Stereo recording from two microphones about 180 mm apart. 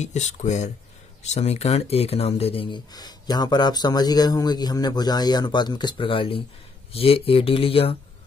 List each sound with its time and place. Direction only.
0.0 s speech: 40° left (ahead or behind)